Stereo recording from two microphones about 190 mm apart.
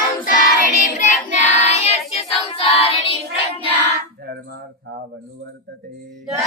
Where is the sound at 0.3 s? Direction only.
50° left (ahead or behind); by 3.1 s 30° left (ahead or behind).